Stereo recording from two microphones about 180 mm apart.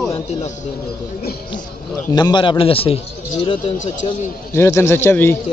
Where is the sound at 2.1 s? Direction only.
25° left (ahead or behind).